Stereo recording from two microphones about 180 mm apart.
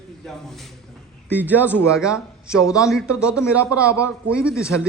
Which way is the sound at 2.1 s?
15° left (ahead or behind).